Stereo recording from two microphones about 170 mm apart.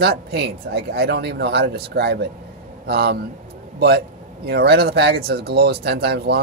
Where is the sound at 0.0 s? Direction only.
75° right (ahead or behind).